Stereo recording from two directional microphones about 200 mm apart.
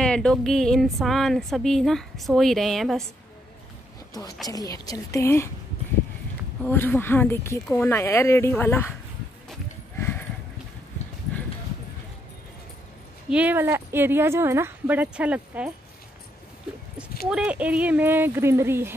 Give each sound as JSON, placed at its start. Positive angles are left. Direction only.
{"t": 0.0, "sound": "female singing", "side_deg": 5}
{"t": 4.5, "sound": "speech", "side_deg": 15}
{"t": 6.6, "sound": "speech", "side_deg": 10}
{"t": 9.9, "sound": "clip-clop", "side_deg": 10}
{"t": 13.3, "sound": "speech", "side_deg": -5}
{"t": 17.3, "sound": "speech", "side_deg": -5}